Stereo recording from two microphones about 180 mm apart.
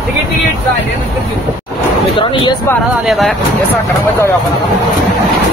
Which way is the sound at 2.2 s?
30° left (ahead or behind).